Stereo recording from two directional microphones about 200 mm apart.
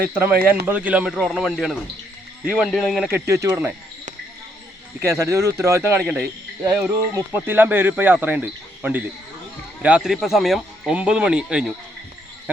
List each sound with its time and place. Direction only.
0.1 s speech: 10° right (ahead or behind)
3.2 s speech: 15° right (ahead or behind)
4.9 s speech: 15° right (ahead or behind)